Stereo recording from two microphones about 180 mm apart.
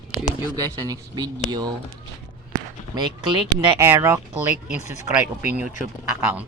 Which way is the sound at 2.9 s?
25° right (ahead or behind).